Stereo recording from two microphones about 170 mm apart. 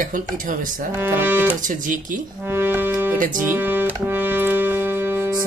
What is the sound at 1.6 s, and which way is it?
Speech, 50° right (ahead or behind).